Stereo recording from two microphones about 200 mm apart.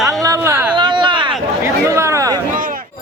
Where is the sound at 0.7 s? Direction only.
20° right (ahead or behind).